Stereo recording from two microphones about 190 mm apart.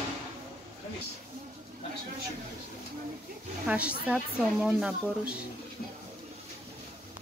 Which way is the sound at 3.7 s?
5° right (ahead or behind).